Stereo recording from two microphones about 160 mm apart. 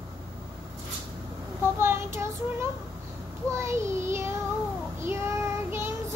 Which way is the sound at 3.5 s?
15° right (ahead or behind).